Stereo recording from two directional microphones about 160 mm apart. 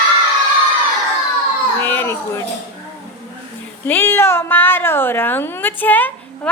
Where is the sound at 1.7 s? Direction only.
15° left (ahead or behind).